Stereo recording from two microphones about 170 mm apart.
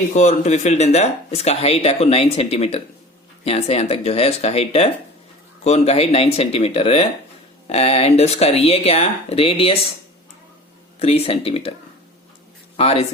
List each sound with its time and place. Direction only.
0.1 s speech: 45° left (ahead or behind)
11.0 s speech: 35° left (ahead or behind)
12.7 s speech: 35° left (ahead or behind)